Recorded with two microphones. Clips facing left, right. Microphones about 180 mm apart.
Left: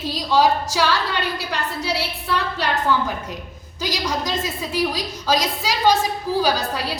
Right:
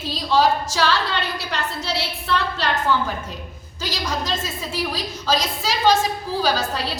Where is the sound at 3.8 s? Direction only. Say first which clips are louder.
Left 1 dB; 15° left (ahead or behind).